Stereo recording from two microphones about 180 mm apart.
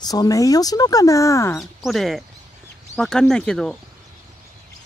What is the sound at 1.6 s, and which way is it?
Speech, centre (ahead or behind).